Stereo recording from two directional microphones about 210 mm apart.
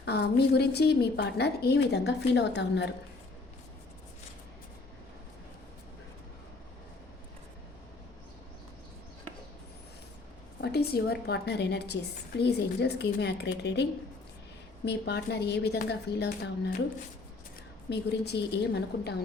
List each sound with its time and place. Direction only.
0.0 s a woman's voice: 50° left (ahead or behind)
10.6 s a woman's voice: 50° left (ahead or behind)
14.8 s a woman's voice: 50° left (ahead or behind)
17.8 s a woman's voice: 50° left (ahead or behind)